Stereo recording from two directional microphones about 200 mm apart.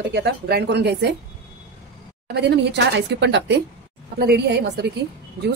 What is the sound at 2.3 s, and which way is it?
A woman's voice, 60° right (ahead or behind).